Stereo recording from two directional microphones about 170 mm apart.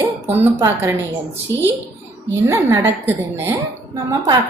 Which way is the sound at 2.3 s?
20° right (ahead or behind).